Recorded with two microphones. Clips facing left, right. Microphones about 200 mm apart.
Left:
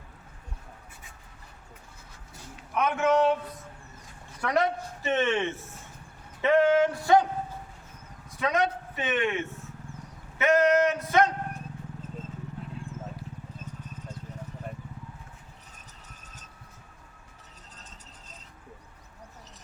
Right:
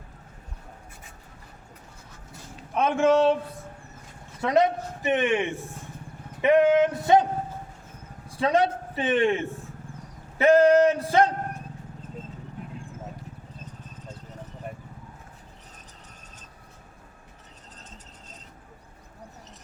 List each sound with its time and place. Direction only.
2.7 s male singing: 30° right (ahead or behind)
4.4 s a man's voice: 20° right (ahead or behind)
6.4 s male singing: 20° right (ahead or behind)
8.3 s a man's voice: 30° right (ahead or behind)
10.3 s a sound: 35° right (ahead or behind)